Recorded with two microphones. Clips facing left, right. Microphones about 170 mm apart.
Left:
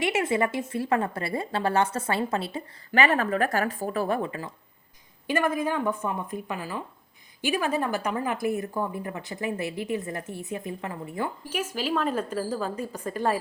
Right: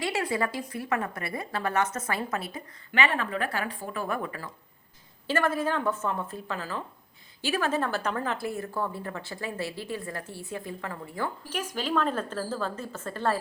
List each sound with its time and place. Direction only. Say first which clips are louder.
0.0 s speech: left 4 dB; 20° left (ahead or behind)
2.9 s a woman's voice: left 5 dB; 40° left (ahead or behind); by 11.3 s 20° left (ahead or behind)
11.4 s a woman's voice: left 2 dB; 10° left (ahead or behind)